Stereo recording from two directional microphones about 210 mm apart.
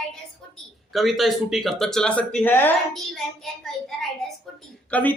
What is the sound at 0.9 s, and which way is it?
A man's voice, centre (ahead or behind).